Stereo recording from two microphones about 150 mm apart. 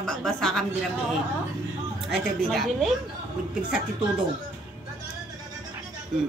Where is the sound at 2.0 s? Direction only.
Centre (ahead or behind).